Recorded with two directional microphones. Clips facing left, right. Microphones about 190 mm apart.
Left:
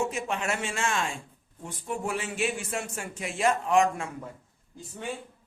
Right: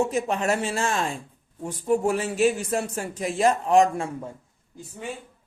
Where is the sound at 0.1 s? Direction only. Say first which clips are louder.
Right 7 dB; 40° right (ahead or behind).